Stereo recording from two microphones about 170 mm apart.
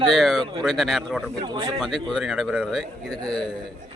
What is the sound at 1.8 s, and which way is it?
Speech, centre (ahead or behind).